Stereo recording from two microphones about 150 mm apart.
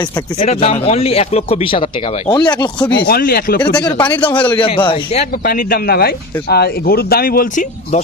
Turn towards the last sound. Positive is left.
turn(degrees=75)  # may be behind; listen again after turning